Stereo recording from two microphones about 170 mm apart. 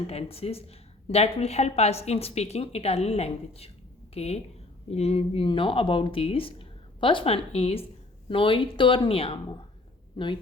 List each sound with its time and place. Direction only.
0.1 s a woman's voice: 35° left (ahead or behind)